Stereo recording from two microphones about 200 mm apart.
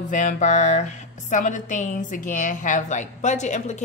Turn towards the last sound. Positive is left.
turn(degrees=35)  # may be behind; listen again after turning